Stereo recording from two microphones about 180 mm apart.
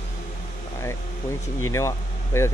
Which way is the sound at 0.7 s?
15° left (ahead or behind).